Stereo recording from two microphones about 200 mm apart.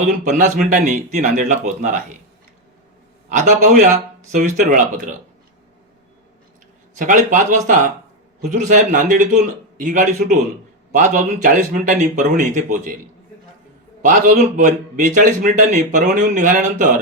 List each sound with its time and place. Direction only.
0.0 s a man's voice: 40° right (ahead or behind)
3.2 s a man's voice: 40° right (ahead or behind)
6.9 s a man's voice: 40° right (ahead or behind)
14.0 s a man's voice: 40° right (ahead or behind)